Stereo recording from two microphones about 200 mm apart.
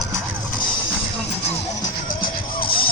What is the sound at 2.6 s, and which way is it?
Music, 25° left (ahead or behind).